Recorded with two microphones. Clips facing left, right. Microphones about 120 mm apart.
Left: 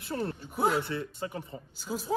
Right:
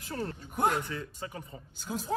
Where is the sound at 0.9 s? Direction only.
35° left (ahead or behind).